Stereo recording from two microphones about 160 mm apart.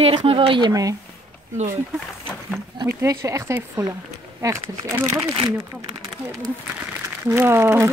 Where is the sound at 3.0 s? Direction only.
20° right (ahead or behind).